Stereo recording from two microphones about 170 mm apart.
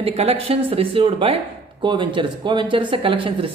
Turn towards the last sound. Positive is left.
turn(degrees=-30)  # may be behind; listen again after turning